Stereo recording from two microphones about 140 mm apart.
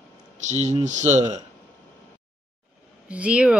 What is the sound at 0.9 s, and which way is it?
Mantra, 60° right (ahead or behind).